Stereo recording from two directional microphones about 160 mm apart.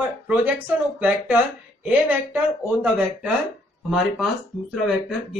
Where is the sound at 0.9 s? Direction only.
10° right (ahead or behind).